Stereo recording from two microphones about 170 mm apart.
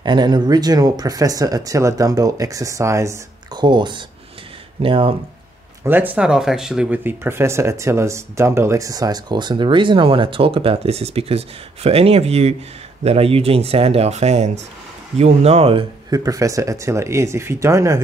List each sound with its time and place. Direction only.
0.0 s speech: 25° right (ahead or behind)
5.9 s speech: 10° right (ahead or behind); by 15.8 s 35° right (ahead or behind)
16.1 s speech: 20° right (ahead or behind)